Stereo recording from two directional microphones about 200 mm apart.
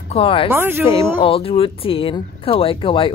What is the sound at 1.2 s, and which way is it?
Speech, 25° left (ahead or behind).